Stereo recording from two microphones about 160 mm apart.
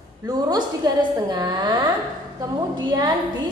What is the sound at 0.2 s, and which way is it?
A woman's voice, 25° right (ahead or behind).